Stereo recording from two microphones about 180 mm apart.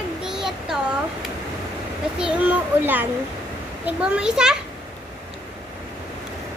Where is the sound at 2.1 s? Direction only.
5° right (ahead or behind).